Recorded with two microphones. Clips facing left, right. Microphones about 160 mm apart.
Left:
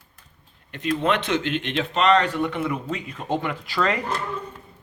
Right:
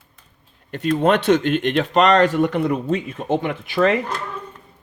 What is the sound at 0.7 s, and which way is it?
Speech, 40° right (ahead or behind).